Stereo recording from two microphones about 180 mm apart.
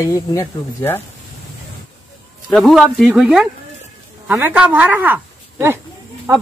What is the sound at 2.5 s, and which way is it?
Speech, centre (ahead or behind).